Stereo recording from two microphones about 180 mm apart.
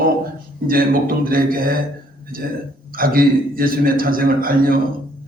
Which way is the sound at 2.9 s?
55° right (ahead or behind).